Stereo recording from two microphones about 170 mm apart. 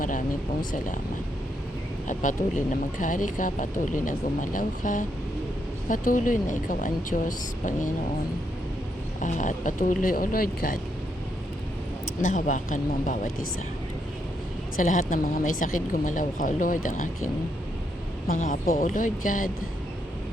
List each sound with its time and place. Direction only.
3.0 s speech: 50° left (ahead or behind)
9.2 s speech: 45° left (ahead or behind)
12.2 s speech: 50° left (ahead or behind)
14.8 s speech: 50° left (ahead or behind)
18.3 s speech: 50° left (ahead or behind)